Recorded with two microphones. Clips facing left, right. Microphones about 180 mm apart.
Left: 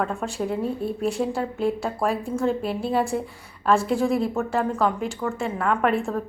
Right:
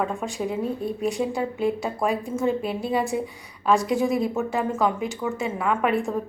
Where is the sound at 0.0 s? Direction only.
Centre (ahead or behind).